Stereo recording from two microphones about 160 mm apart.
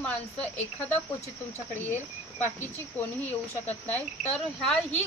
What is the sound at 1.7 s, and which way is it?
Cricket, 15° left (ahead or behind).